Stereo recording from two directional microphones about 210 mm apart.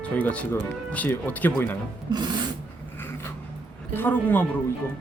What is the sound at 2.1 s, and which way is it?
Filing, 20° right (ahead or behind).